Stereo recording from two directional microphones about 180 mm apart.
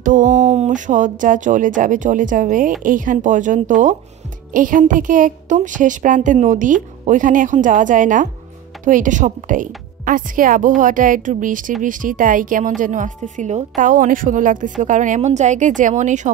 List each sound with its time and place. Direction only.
0.0 s a woman's voice: 45° right (ahead or behind)